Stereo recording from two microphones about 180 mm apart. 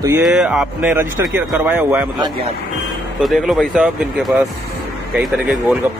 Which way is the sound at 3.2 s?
Centre (ahead or behind).